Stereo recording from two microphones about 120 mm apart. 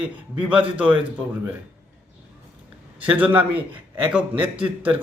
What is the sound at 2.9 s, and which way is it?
A man's voice, 15° right (ahead or behind).